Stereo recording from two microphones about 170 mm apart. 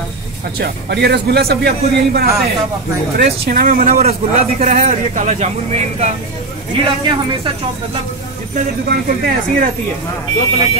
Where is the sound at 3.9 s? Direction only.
40° right (ahead or behind).